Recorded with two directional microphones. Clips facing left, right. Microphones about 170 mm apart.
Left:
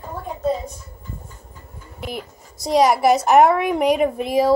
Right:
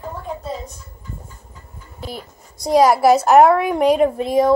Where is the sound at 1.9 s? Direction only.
15° left (ahead or behind).